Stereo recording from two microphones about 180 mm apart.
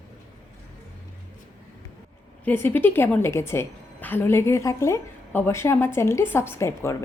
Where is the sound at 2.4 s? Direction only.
10° left (ahead or behind).